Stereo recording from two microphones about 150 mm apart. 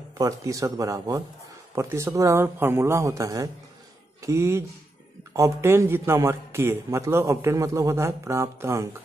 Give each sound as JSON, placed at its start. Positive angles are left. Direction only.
{"t": 0.2, "sound": "a man's voice", "side_deg": -20}